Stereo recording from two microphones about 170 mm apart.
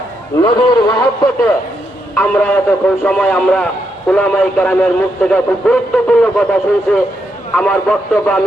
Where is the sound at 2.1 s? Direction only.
5° left (ahead or behind).